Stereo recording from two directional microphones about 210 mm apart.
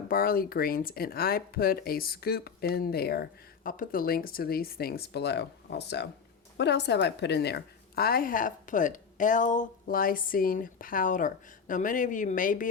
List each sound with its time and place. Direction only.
0.1 s a woman's voice: 45° left (ahead or behind)